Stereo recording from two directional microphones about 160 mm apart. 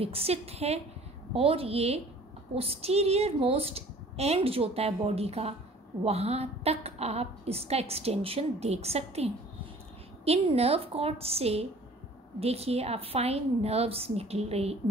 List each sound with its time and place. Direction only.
0.0 s a woman's voice: 35° right (ahead or behind)